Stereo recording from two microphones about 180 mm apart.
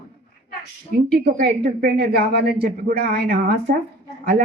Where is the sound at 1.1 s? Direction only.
55° right (ahead or behind).